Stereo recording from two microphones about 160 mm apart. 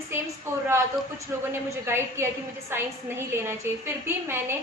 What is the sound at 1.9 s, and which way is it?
A woman's voice, 15° right (ahead or behind).